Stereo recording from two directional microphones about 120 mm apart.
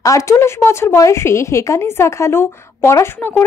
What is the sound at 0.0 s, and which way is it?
Speech, 25° left (ahead or behind).